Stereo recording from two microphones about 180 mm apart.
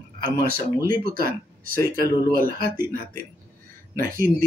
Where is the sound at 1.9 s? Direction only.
55° right (ahead or behind).